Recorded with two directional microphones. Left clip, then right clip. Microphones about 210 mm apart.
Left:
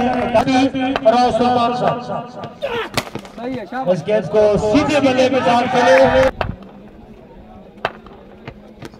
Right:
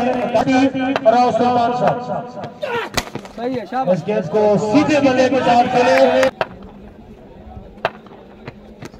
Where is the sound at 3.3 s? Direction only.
55° right (ahead or behind).